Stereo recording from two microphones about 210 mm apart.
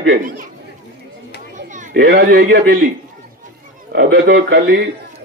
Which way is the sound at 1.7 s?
35° right (ahead or behind).